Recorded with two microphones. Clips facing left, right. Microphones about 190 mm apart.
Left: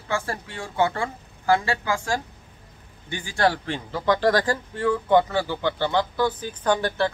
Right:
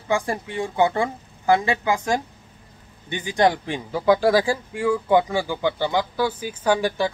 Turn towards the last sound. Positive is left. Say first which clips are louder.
# right 2 dB
turn(degrees=-10)  # may be behind; listen again after turning